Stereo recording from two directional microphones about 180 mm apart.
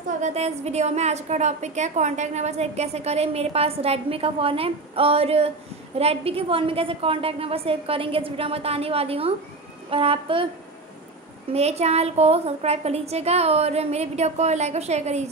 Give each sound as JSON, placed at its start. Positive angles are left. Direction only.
{"t": 0.2, "sound": "a woman's voice", "side_deg": -35}
{"t": 11.5, "sound": "a woman's voice", "side_deg": -35}